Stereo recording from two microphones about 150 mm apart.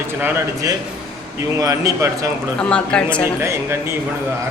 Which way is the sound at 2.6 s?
5° left (ahead or behind).